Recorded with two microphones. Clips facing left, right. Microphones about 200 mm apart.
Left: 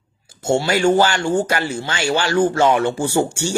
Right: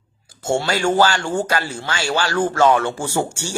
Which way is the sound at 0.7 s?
20° left (ahead or behind).